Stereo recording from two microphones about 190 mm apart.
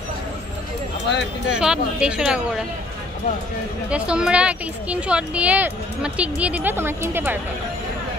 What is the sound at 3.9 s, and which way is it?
Speech, 5° right (ahead or behind).